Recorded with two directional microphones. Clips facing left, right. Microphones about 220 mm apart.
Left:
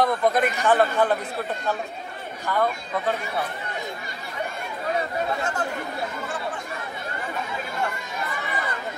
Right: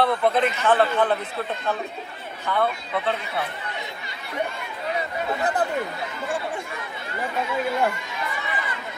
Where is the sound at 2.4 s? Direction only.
10° left (ahead or behind).